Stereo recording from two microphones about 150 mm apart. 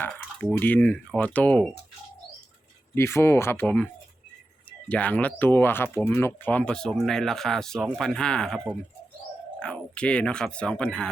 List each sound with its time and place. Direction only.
0.0 s drip: 10° left (ahead or behind)
0.6 s speech: 10° left (ahead or behind)
2.9 s speech: 15° left (ahead or behind)